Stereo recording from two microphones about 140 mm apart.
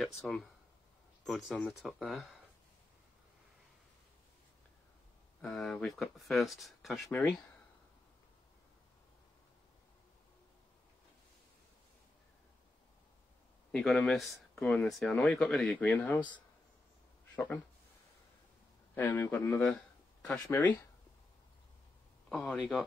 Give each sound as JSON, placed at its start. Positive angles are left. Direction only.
{"t": 0.2, "sound": "speech", "side_deg": 5}
{"t": 5.4, "sound": "speech", "side_deg": 5}
{"t": 13.7, "sound": "speech", "side_deg": 0}
{"t": 18.9, "sound": "a man's voice", "side_deg": 20}
{"t": 19.6, "sound": "a sound", "side_deg": 5}
{"t": 20.4, "sound": "a man's voice", "side_deg": 20}
{"t": 22.3, "sound": "speech", "side_deg": 0}